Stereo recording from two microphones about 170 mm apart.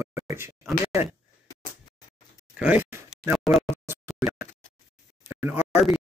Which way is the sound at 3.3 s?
5° right (ahead or behind).